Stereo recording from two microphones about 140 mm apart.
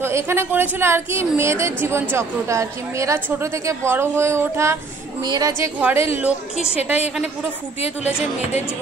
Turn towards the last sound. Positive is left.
turn(degrees=50)  # may be behind; listen again after turning